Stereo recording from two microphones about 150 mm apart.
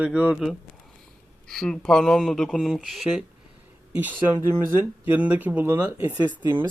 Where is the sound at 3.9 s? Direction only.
10° right (ahead or behind).